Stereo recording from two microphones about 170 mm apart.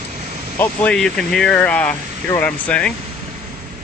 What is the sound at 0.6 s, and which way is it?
Speech, 10° left (ahead or behind).